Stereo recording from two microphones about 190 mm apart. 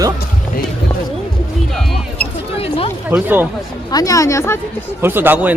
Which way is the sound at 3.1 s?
10° right (ahead or behind).